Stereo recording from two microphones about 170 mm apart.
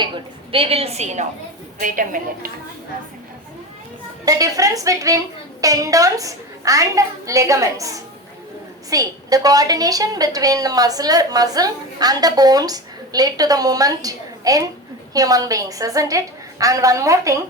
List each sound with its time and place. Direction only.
0.5 s a woman's voice: 35° right (ahead or behind); by 2.5 s 50° right (ahead or behind)
4.3 s a woman's voice: 20° right (ahead or behind)